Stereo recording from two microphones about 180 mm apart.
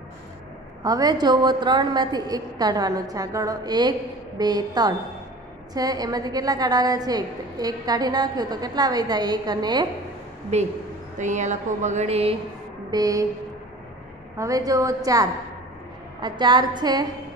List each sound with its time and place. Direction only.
0.8 s a woman's voice: 20° right (ahead or behind)
10.5 s speech: 40° right (ahead or behind)
12.9 s a woman's voice: 20° right (ahead or behind)
14.3 s a woman's voice: 20° right (ahead or behind)